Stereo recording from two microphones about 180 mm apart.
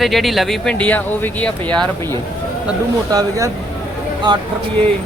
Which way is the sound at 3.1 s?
20° right (ahead or behind).